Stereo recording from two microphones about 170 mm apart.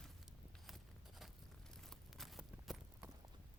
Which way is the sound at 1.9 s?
Centre (ahead or behind).